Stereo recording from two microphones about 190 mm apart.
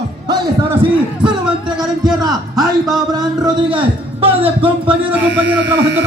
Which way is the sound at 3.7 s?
30° right (ahead or behind).